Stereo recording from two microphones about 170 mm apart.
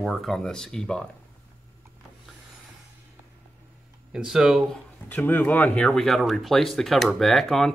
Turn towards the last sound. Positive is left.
turn(degrees=0)  # may be behind; listen again after turning